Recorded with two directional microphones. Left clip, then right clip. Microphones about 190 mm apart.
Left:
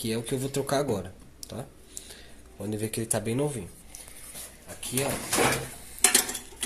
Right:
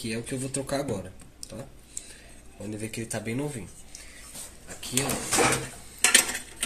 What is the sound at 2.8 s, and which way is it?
Speech, 40° left (ahead or behind).